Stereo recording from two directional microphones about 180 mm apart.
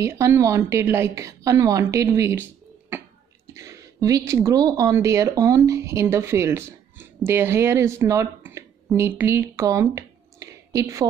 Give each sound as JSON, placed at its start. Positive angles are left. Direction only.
{"t": 0.0, "sound": "a woman's voice", "side_deg": -15}
{"t": 3.5, "sound": "speech", "side_deg": -20}